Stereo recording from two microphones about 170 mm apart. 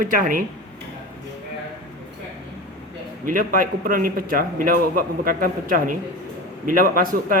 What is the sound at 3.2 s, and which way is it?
A man's voice, 55° right (ahead or behind).